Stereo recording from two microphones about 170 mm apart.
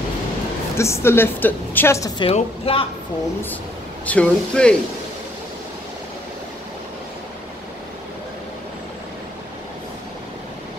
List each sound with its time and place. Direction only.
0.7 s a woman's voice: 15° left (ahead or behind); by 2.8 s 35° left (ahead or behind)
4.0 s a woman's voice: 10° left (ahead or behind)